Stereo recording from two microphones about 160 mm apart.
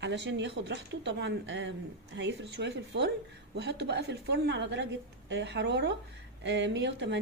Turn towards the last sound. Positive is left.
turn(degrees=-90)